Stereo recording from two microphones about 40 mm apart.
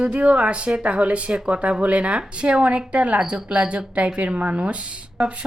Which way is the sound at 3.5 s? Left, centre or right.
Right.